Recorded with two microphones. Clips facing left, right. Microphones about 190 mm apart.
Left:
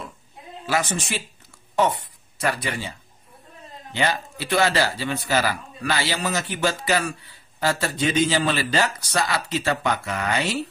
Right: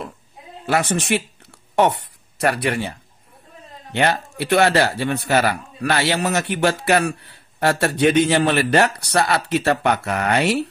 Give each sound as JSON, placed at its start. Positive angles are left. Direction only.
{"t": 0.7, "sound": "a man's voice", "side_deg": -60}